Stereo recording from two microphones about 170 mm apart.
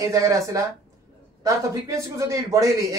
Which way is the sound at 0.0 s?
20° right (ahead or behind).